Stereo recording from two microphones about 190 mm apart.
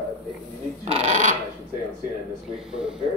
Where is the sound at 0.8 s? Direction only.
35° right (ahead or behind).